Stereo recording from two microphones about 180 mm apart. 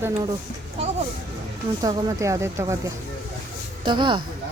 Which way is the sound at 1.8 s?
20° right (ahead or behind).